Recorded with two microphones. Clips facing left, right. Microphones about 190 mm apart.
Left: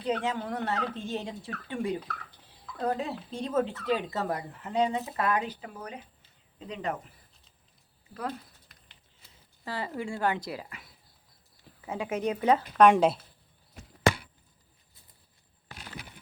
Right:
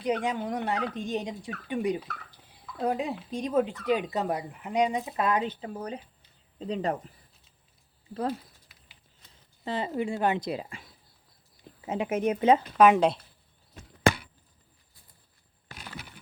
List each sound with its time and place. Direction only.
0.0 s speech: 15° right (ahead or behind); by 7.1 s 35° right (ahead or behind)
8.6 s patter: 5° right (ahead or behind)
9.6 s speech: 20° right (ahead or behind)
12.7 s speech: 5° right (ahead or behind)